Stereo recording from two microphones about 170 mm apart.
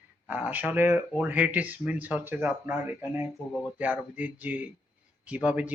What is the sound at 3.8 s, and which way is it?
Speech, 10° right (ahead or behind).